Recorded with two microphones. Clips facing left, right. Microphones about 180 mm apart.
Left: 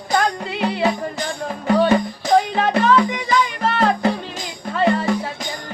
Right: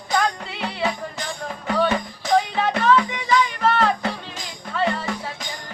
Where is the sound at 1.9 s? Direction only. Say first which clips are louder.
Left 5 dB; 35° left (ahead or behind).